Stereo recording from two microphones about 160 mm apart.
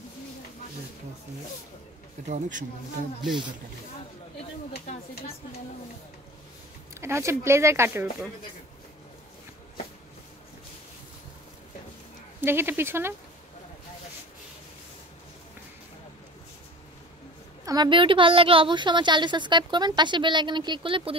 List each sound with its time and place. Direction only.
2.2 s speech: 50° right (ahead or behind)
6.9 s speech: 15° right (ahead or behind)
12.4 s speech: 15° right (ahead or behind)
17.6 s a woman's voice: 30° right (ahead or behind)